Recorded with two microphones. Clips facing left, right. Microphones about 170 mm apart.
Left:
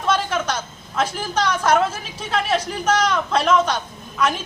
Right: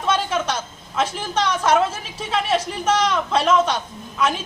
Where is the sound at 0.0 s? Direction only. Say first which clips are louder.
Even; 5° right (ahead or behind).